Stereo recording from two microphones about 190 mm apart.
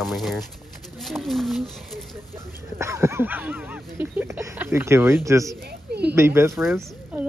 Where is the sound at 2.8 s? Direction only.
15° right (ahead or behind).